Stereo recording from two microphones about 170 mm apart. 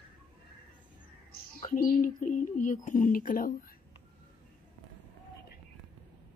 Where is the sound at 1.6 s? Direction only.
50° left (ahead or behind).